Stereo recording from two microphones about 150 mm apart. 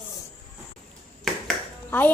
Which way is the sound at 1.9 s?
15° left (ahead or behind).